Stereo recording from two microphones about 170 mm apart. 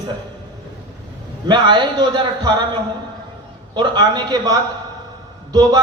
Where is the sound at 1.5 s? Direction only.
25° right (ahead or behind).